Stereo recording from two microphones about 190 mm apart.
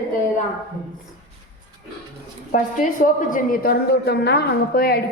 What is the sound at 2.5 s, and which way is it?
A woman's voice, 45° left (ahead or behind).